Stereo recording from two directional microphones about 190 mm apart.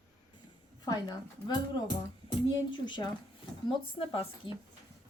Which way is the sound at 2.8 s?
25° left (ahead or behind).